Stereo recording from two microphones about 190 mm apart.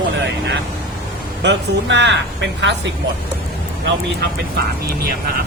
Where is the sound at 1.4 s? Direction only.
65° right (ahead or behind).